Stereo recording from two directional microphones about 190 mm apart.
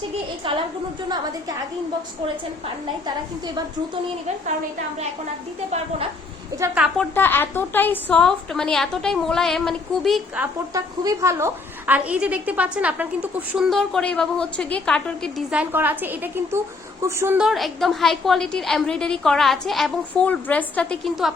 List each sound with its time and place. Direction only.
0.4 s a woman's voice: 25° right (ahead or behind)
6.6 s a woman's voice: 5° right (ahead or behind)
7.0 s a woman's voice: 10° left (ahead or behind); by 17.4 s 15° right (ahead or behind)
17.4 s a woman's voice: centre (ahead or behind)